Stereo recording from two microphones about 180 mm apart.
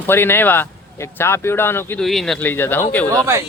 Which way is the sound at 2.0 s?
Centre (ahead or behind).